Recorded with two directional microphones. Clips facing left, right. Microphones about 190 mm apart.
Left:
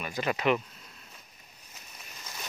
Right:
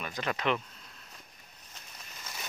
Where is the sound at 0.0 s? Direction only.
10° left (ahead or behind).